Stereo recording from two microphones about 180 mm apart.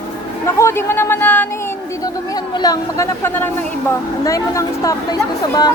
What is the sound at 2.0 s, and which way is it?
A woman's voice, 20° left (ahead or behind).